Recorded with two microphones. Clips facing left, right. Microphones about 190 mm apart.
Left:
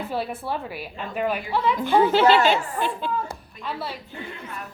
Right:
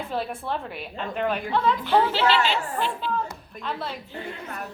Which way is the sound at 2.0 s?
50° left (ahead or behind).